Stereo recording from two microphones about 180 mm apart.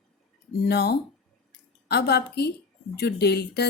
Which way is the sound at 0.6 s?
60° left (ahead or behind).